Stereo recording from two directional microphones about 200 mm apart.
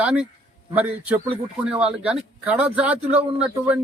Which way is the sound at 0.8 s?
10° right (ahead or behind).